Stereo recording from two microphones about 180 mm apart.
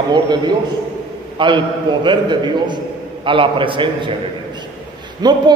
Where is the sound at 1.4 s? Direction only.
25° right (ahead or behind).